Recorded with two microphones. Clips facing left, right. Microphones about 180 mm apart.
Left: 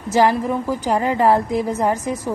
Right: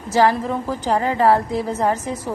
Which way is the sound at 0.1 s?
15° left (ahead or behind).